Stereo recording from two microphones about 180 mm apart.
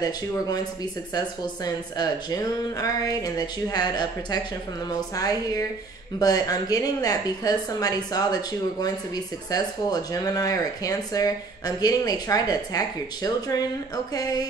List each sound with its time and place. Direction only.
1.1 s speech: 20° left (ahead or behind)